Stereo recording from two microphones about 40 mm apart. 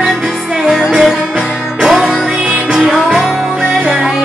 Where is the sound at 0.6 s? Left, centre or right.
Centre.